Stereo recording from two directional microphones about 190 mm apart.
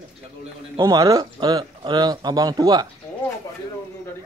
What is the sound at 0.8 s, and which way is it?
Speech, 20° right (ahead or behind).